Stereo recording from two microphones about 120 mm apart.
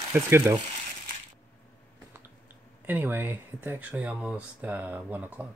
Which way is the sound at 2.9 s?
15° right (ahead or behind).